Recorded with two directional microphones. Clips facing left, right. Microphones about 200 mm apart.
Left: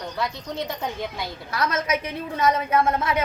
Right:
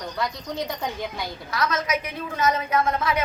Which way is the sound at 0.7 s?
Centre (ahead or behind).